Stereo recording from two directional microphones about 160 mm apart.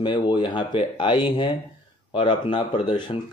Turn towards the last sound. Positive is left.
turn(degrees=30)  # may be behind; listen again after turning